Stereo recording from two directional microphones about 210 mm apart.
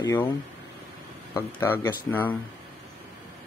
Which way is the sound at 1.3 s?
10° left (ahead or behind).